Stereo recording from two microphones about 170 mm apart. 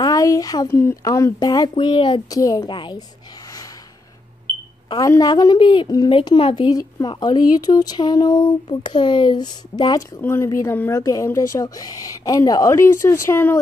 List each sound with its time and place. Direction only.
0.0 s speech: 20° left (ahead or behind)
4.8 s speech: 25° left (ahead or behind)